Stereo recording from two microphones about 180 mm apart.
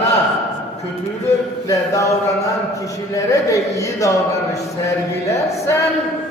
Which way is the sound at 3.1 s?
15° left (ahead or behind).